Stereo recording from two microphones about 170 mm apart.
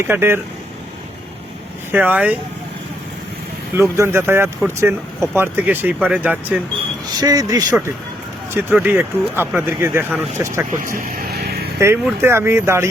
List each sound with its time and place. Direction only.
0.0 s speech: 15° right (ahead or behind)
1.9 s speech: 10° right (ahead or behind)
3.8 s speech: 15° right (ahead or behind)
7.2 s speech: 20° right (ahead or behind)
10.8 s vehicle: 55° right (ahead or behind)
12.0 s speech: 15° right (ahead or behind)